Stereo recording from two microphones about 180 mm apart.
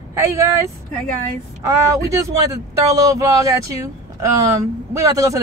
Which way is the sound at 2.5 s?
20° right (ahead or behind).